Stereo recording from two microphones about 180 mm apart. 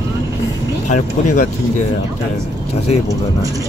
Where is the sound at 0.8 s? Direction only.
45° left (ahead or behind).